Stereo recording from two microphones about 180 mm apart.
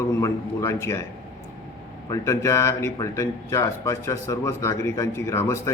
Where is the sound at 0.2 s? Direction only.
15° left (ahead or behind).